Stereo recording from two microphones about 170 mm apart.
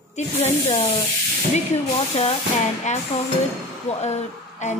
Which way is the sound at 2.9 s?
45° left (ahead or behind).